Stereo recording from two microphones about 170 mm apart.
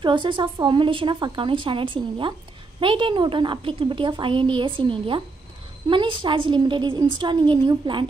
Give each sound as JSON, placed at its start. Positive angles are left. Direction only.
{"t": 0.0, "sound": "a woman's voice", "side_deg": -30}